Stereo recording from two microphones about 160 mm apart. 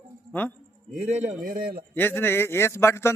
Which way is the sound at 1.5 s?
65° right (ahead or behind).